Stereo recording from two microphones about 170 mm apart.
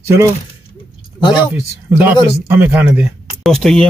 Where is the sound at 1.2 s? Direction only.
25° left (ahead or behind).